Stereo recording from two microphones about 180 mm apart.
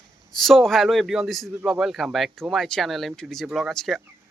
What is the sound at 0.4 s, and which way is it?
Speech, centre (ahead or behind).